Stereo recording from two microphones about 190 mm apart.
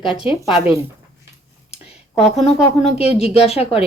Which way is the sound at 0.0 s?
5° right (ahead or behind).